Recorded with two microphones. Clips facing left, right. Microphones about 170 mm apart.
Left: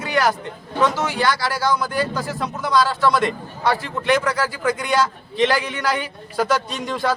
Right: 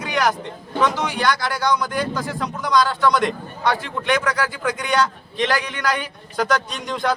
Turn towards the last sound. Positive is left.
turn(degrees=5)  # may be behind; listen again after turning